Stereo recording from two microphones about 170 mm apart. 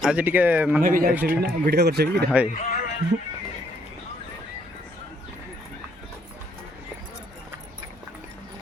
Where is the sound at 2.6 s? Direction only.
50° left (ahead or behind).